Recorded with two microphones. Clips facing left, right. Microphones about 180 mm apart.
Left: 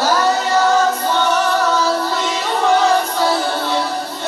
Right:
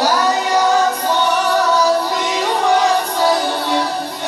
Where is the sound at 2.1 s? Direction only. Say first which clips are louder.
Right 1 dB; 15° right (ahead or behind).